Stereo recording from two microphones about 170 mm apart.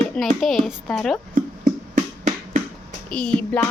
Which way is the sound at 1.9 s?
50° right (ahead or behind).